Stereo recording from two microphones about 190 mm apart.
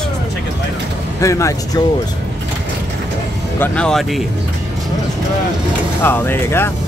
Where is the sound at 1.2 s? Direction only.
15° left (ahead or behind).